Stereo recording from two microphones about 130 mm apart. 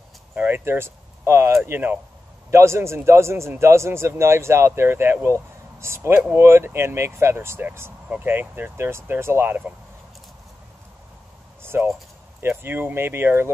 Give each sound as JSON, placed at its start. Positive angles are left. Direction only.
{"t": 0.3, "sound": "a man's voice", "side_deg": -15}
{"t": 11.6, "sound": "a sound", "side_deg": -20}
{"t": 12.4, "sound": "speech", "side_deg": -15}